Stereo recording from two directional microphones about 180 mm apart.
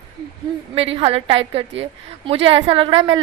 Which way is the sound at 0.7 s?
30° right (ahead or behind).